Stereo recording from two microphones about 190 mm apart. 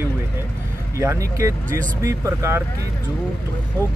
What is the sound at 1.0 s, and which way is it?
Speech, 15° right (ahead or behind).